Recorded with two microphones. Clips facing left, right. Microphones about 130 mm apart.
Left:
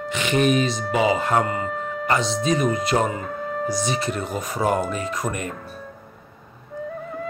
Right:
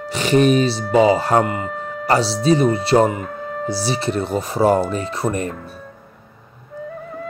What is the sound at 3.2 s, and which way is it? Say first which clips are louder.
Music: even; centre (ahead or behind).